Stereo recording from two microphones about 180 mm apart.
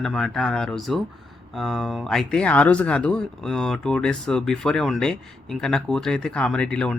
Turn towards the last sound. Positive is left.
turn(degrees=5)  # may be behind; listen again after turning